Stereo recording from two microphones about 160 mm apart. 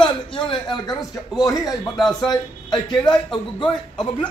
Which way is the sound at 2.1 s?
25° left (ahead or behind).